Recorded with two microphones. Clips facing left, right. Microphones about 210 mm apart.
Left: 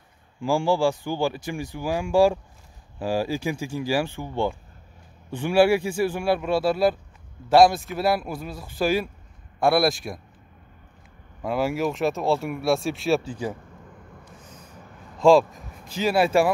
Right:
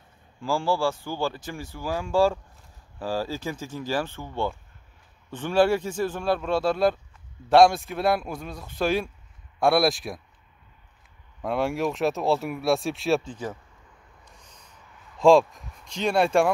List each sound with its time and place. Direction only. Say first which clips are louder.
0.4 s speech: left 3 dB; 15° left (ahead or behind); by 10.2 s centre (ahead or behind)
11.4 s speech: left 1 dB; centre (ahead or behind)
15.1 s speech: left 1 dB; centre (ahead or behind)